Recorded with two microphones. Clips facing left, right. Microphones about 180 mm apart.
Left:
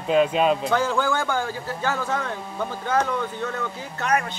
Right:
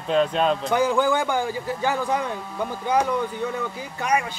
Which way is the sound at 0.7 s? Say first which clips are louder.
Right 2 dB; 15° right (ahead or behind).